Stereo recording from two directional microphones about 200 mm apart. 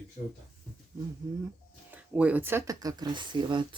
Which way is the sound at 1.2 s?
20° right (ahead or behind).